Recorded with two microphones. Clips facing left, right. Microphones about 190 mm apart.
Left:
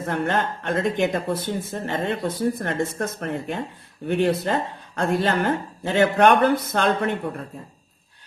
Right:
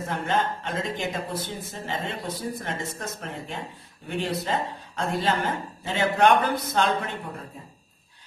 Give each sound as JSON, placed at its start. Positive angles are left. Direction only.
{"t": 0.0, "sound": "speech", "side_deg": 60}